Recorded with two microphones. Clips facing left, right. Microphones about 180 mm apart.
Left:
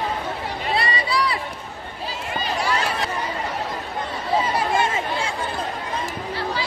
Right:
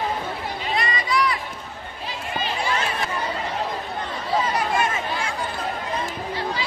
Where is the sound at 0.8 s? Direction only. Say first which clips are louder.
Even; 30° left (ahead or behind).